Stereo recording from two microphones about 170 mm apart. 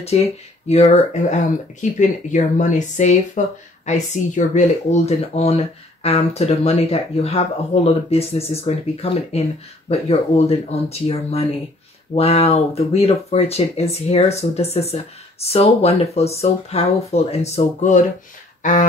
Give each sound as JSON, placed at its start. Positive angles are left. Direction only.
{"t": 0.0, "sound": "speech", "side_deg": 40}